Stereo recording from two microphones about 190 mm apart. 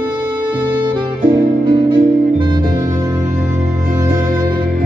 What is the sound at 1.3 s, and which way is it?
Music, 25° right (ahead or behind).